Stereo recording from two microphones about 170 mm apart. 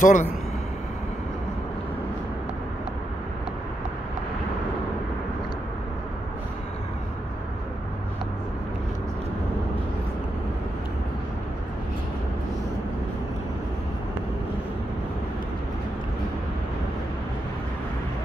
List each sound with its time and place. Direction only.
0.0 s speech: 45° left (ahead or behind)